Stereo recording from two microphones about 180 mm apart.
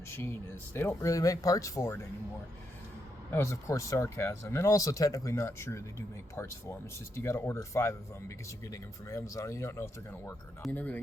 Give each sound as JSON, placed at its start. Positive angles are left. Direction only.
{"t": 0.1, "sound": "speech", "side_deg": 15}
{"t": 3.3, "sound": "speech", "side_deg": 15}